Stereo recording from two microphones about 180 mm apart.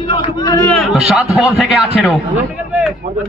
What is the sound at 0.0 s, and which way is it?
Speech, 30° left (ahead or behind).